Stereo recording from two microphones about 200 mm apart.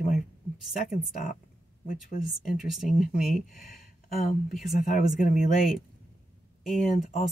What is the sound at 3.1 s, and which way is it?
Speech, 45° left (ahead or behind).